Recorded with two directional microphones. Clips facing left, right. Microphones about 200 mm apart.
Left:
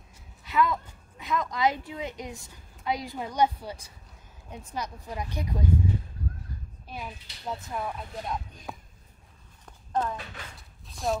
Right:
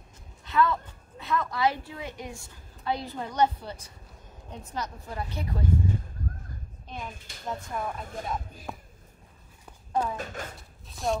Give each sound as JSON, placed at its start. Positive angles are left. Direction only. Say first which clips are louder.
{"t": 0.4, "sound": "speech", "louder": "right 1 dB", "side_deg": 15}
{"t": 6.9, "sound": "speech", "louder": "even", "side_deg": 5}
{"t": 7.2, "sound": "speech", "louder": "right 4 dB", "side_deg": -50}
{"t": 7.4, "sound": "speech", "louder": "even", "side_deg": 5}
{"t": 8.0, "sound": "speech", "louder": "right 1 dB", "side_deg": -45}
{"t": 8.3, "sound": "speech", "louder": "even", "side_deg": 0}
{"t": 9.7, "sound": "a sound", "louder": "even", "side_deg": -5}
{"t": 10.1, "sound": "speech", "louder": "right 5 dB", "side_deg": -45}
{"t": 10.9, "sound": "a sound", "louder": "even", "side_deg": 0}